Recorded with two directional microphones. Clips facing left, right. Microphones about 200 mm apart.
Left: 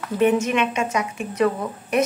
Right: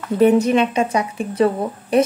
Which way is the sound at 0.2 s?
35° right (ahead or behind).